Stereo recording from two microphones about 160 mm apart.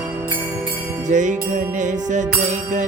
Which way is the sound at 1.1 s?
50° right (ahead or behind).